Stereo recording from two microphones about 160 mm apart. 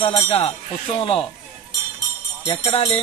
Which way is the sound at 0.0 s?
35° left (ahead or behind).